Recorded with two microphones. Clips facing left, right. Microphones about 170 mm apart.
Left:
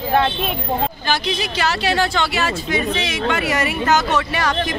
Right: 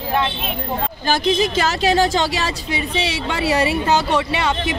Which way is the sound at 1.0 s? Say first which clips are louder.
Right 5 dB; 45° right (ahead or behind).